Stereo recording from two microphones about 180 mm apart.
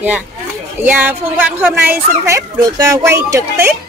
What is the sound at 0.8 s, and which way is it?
Speech, 10° right (ahead or behind).